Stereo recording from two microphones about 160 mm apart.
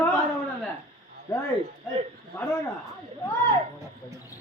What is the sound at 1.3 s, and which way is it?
Speech, 25° left (ahead or behind).